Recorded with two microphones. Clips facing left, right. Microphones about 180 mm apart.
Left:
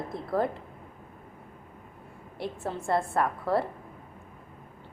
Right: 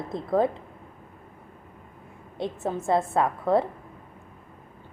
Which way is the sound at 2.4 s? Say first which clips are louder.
Right 4 dB; 20° right (ahead or behind).